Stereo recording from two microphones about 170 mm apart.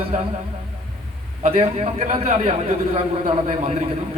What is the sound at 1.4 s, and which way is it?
A man's voice, 40° right (ahead or behind).